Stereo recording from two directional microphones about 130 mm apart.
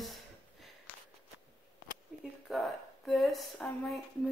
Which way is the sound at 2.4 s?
Centre (ahead or behind).